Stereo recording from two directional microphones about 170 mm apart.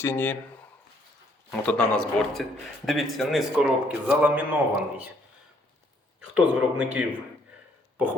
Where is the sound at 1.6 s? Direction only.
5° left (ahead or behind); by 4.4 s 10° right (ahead or behind).